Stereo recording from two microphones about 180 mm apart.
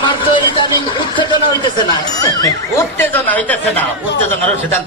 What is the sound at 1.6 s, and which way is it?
Speech, 20° left (ahead or behind).